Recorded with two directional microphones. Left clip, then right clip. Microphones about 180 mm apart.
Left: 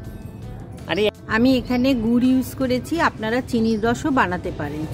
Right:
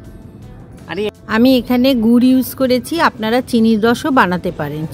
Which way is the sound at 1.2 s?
40° right (ahead or behind).